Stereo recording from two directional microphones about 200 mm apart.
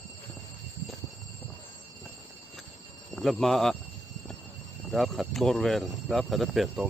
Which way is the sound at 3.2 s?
Centre (ahead or behind).